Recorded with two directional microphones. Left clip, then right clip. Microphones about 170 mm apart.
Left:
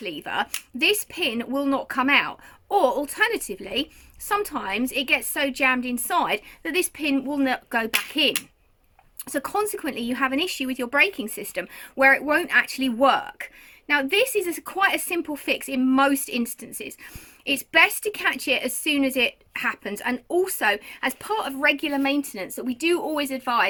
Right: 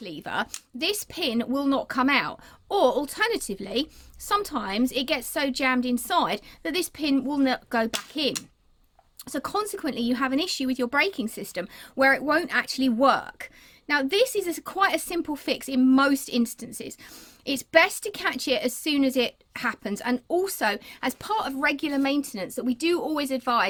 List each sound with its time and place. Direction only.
0.0 s speech: 55° right (ahead or behind)